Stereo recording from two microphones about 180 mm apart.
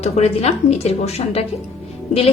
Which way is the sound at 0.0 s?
35° left (ahead or behind).